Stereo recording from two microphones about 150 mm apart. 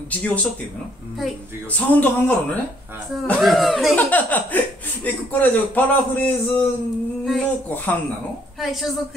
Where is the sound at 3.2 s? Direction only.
Centre (ahead or behind).